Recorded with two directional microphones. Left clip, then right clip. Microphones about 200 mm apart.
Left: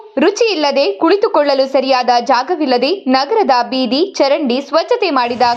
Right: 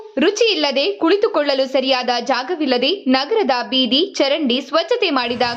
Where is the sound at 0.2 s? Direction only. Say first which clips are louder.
Left 3 dB; 5° left (ahead or behind).